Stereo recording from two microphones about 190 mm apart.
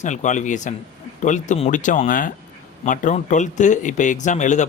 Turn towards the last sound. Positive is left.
turn(degrees=40)  # may be behind; listen again after turning